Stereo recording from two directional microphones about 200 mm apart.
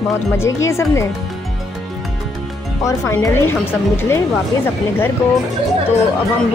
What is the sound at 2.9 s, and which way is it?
Speech, 15° left (ahead or behind).